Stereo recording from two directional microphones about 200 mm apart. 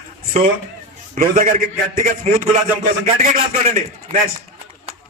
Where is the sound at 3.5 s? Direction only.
40° right (ahead or behind).